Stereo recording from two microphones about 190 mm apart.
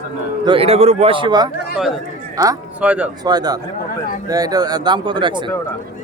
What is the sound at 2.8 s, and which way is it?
Speech, 5° right (ahead or behind).